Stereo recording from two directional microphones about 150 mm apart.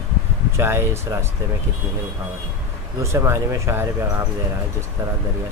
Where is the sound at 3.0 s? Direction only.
20° right (ahead or behind).